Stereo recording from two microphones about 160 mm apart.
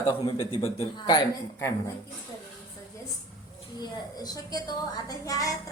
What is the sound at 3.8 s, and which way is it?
A woman's voice, 25° left (ahead or behind).